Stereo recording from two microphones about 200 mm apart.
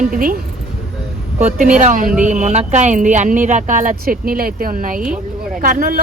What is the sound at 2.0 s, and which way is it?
Speech, 5° right (ahead or behind).